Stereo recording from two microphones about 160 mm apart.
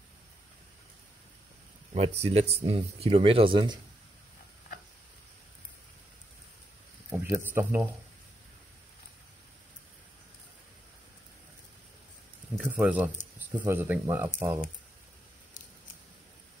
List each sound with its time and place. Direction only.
2.0 s speech: 40° right (ahead or behind)
7.1 s a sound: 10° right (ahead or behind)
7.4 s speech: 15° right (ahead or behind)
12.5 s speech: 10° right (ahead or behind)